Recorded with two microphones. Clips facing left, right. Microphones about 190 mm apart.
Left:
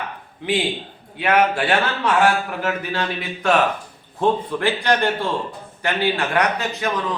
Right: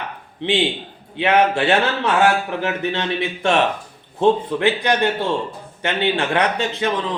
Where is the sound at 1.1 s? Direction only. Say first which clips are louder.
Right 2 dB; 25° right (ahead or behind).